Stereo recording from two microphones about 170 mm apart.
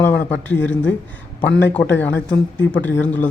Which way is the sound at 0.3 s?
10° left (ahead or behind).